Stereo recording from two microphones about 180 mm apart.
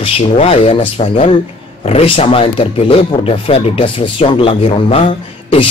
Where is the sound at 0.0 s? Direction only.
35° left (ahead or behind).